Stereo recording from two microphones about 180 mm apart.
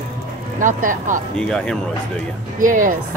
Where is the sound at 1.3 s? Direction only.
5° left (ahead or behind).